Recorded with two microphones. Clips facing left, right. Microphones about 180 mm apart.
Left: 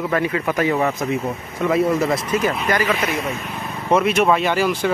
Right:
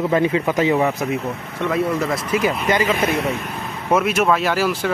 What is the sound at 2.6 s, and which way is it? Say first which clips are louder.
Speech: right 3 dB; 20° right (ahead or behind).